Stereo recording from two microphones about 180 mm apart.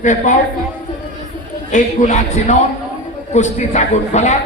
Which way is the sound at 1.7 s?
40° left (ahead or behind).